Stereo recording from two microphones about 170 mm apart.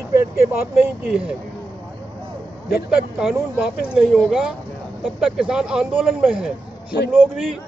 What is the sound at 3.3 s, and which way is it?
Speech, 5° right (ahead or behind).